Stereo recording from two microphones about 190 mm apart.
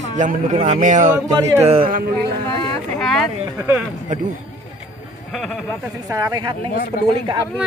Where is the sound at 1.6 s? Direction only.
30° right (ahead or behind).